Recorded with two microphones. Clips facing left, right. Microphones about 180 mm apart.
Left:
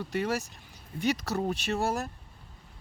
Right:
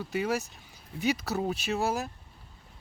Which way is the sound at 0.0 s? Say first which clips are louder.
Even; centre (ahead or behind).